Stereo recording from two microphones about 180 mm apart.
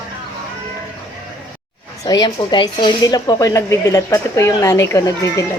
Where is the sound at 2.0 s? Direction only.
20° left (ahead or behind).